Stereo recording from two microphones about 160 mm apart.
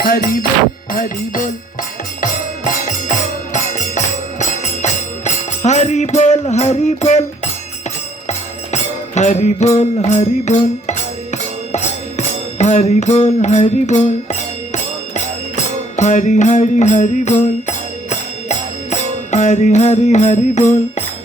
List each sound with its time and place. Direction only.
0.0 s music: 60° left (ahead or behind)
3.5 s music: 50° left (ahead or behind)
8.3 s music: 45° left (ahead or behind)